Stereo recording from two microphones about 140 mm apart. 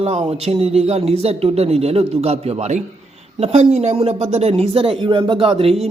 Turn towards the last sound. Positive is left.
turn(degrees=-40)  # may be behind; listen again after turning